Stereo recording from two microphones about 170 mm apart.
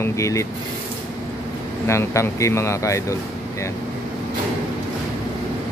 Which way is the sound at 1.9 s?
15° left (ahead or behind).